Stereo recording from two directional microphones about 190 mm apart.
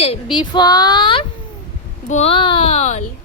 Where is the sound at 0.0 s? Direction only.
30° left (ahead or behind).